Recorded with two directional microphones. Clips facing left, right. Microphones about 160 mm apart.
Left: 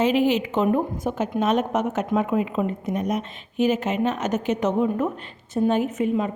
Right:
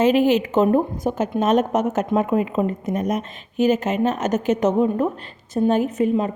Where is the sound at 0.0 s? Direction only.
45° right (ahead or behind).